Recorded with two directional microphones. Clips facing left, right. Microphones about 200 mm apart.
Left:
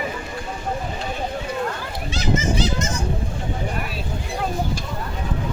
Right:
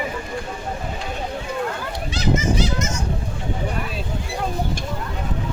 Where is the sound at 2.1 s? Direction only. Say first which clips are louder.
Right 1 dB; 30° left (ahead or behind).